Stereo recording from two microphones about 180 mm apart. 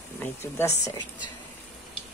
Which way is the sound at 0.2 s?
10° left (ahead or behind).